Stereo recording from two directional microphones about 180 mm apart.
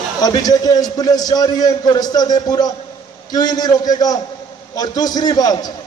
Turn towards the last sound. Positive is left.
turn(degrees=20)  # may be behind; listen again after turning